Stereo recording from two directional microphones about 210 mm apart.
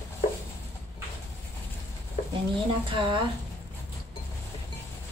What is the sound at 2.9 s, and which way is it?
Speech, 25° right (ahead or behind).